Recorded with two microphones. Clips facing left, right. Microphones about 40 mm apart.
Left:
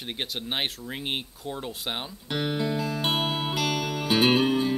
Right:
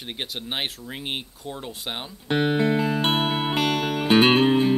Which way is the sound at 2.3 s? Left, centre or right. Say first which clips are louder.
Right 7 dB; right.